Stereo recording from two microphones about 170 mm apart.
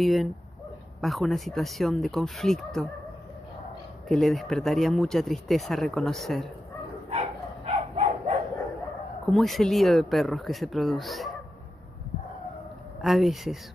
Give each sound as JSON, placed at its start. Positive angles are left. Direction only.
{"t": 0.0, "sound": "speech", "side_deg": 0}
{"t": 4.1, "sound": "speech", "side_deg": 0}
{"t": 7.1, "sound": "dog", "side_deg": -40}
{"t": 9.2, "sound": "speech", "side_deg": 0}
{"t": 13.0, "sound": "speech", "side_deg": 0}